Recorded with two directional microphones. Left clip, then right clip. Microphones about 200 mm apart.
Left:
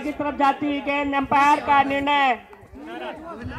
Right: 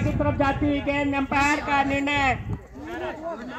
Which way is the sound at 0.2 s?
25° left (ahead or behind).